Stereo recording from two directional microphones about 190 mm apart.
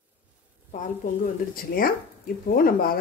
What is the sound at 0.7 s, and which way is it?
Speech, 45° left (ahead or behind).